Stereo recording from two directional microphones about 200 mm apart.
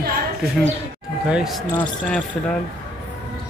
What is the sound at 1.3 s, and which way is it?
Speech, centre (ahead or behind).